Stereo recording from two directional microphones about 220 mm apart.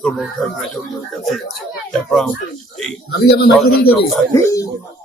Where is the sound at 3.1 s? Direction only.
45° left (ahead or behind).